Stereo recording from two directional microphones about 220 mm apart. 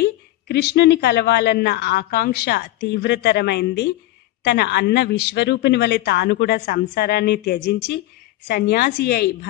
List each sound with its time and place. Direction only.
0.0 s speech: 50° left (ahead or behind)